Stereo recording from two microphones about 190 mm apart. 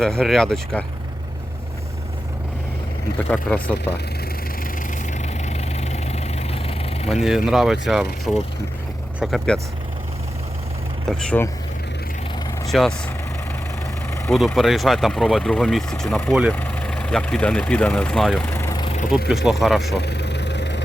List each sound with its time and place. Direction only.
0.0 s speech: 5° left (ahead or behind)
3.2 s speech: 5° left (ahead or behind)
5.1 s vehicle: 35° left (ahead or behind)
7.3 s speech: centre (ahead or behind)
11.2 s speech: 5° left (ahead or behind)
12.6 s speech: centre (ahead or behind)
14.3 s speech: centre (ahead or behind)
16.3 s speech: 5° right (ahead or behind)
16.6 s speech: 10° left (ahead or behind)
18.9 s vehicle: 40° left (ahead or behind)
19.3 s speech: centre (ahead or behind)
20.0 s vehicle: 60° left (ahead or behind)